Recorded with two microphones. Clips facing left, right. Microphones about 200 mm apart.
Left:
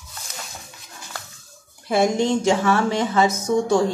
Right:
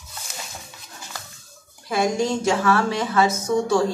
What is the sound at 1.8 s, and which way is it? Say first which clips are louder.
A woman's voice: left 3 dB; 25° left (ahead or behind).